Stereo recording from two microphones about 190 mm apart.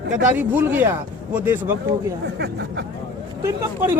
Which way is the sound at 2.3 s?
60° right (ahead or behind).